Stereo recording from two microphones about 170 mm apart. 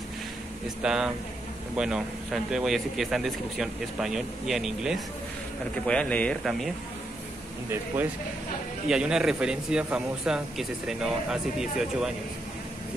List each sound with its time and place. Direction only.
0.8 s speech: 5° right (ahead or behind)
7.7 s speech: 10° right (ahead or behind)